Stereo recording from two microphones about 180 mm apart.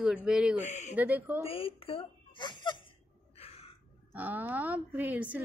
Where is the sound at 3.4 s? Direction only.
35° left (ahead or behind).